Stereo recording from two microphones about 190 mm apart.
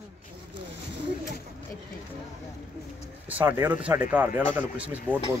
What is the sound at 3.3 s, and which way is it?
Speech, 10° right (ahead or behind).